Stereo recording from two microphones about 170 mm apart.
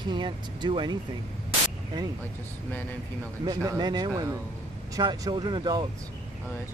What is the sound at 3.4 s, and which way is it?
Speech, 20° right (ahead or behind).